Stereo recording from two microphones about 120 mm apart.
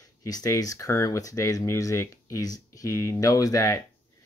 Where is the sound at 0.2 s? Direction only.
30° left (ahead or behind).